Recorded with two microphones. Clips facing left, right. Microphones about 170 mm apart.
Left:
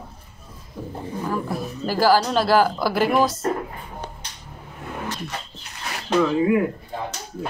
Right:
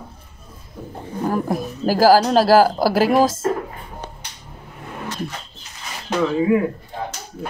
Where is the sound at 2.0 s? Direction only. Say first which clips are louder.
Right 5 dB; 40° right (ahead or behind).